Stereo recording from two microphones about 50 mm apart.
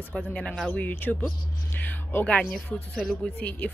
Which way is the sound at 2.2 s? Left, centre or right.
Left.